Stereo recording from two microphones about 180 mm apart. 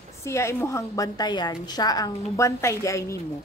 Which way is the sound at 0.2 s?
15° left (ahead or behind).